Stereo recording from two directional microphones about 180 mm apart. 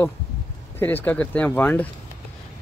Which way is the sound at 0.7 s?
10° left (ahead or behind).